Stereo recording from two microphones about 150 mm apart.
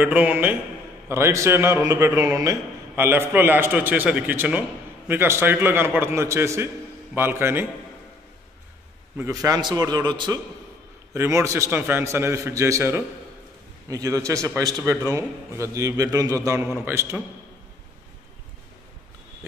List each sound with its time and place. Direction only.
0.0 s a man's voice: 10° right (ahead or behind)
9.1 s a man's voice: 20° right (ahead or behind)
16.6 s a man's voice: 10° right (ahead or behind)